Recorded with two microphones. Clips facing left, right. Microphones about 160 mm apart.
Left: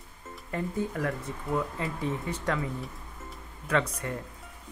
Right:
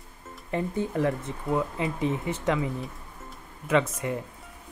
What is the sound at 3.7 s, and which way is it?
Speech, 20° right (ahead or behind).